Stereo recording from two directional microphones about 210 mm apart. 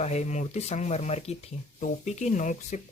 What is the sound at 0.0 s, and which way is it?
Speech, 35° left (ahead or behind).